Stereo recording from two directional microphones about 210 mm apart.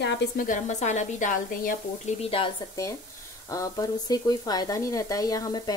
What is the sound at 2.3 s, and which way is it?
Speech, 20° left (ahead or behind).